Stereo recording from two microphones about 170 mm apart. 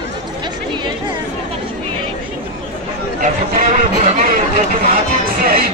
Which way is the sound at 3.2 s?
50° right (ahead or behind).